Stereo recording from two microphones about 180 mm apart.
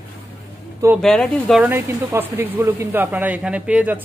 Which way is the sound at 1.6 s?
10° right (ahead or behind).